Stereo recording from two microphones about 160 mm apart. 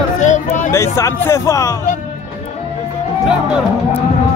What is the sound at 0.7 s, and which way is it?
Speech, 20° left (ahead or behind).